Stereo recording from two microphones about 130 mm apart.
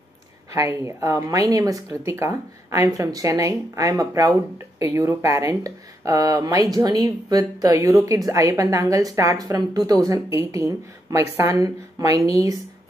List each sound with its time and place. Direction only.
0.5 s a woman's voice: 25° right (ahead or behind)